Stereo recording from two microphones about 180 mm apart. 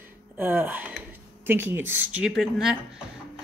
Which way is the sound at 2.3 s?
Centre (ahead or behind).